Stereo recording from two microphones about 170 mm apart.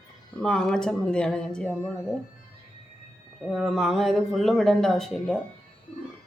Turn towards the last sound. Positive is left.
turn(degrees=0)  # may be behind; listen again after turning